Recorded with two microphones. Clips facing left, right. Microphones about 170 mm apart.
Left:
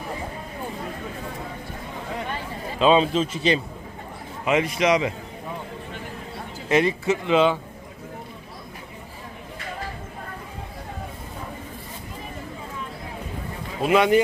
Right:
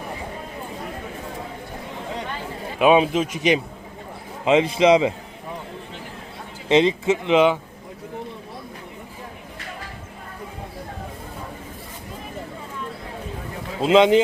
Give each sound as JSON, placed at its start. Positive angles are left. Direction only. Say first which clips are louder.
{"t": 2.7, "sound": "speech", "louder": "right 2 dB", "side_deg": -15}
{"t": 4.4, "sound": "speech", "louder": "right 5 dB", "side_deg": -25}
{"t": 6.7, "sound": "speech", "louder": "right 3 dB", "side_deg": -20}
{"t": 13.8, "sound": "speech", "louder": "right 4 dB", "side_deg": -20}